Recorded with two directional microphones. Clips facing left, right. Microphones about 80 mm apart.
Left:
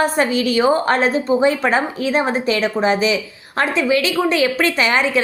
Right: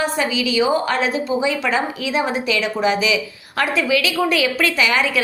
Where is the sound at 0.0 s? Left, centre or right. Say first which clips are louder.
Left 4 dB; left.